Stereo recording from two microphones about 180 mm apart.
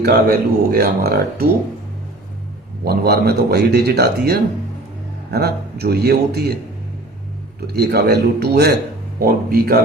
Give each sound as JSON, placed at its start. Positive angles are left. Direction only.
{"t": 0.0, "sound": "speech", "side_deg": -55}
{"t": 2.8, "sound": "speech", "side_deg": -60}
{"t": 7.7, "sound": "speech", "side_deg": -65}